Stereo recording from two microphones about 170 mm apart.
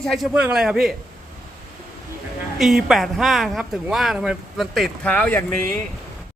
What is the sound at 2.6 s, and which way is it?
Speech, centre (ahead or behind).